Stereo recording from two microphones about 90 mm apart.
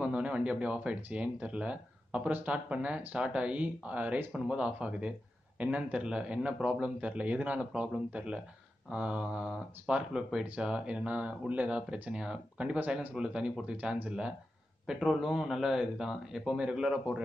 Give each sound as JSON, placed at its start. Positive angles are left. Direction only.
{"t": 0.0, "sound": "speech", "side_deg": -15}